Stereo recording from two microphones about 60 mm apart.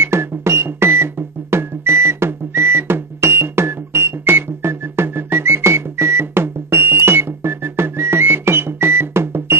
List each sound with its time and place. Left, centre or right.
0.0 s music: right